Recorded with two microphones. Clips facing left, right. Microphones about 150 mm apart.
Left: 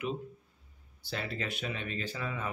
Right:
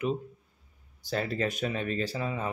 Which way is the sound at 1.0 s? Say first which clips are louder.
Right 7 dB; 40° right (ahead or behind).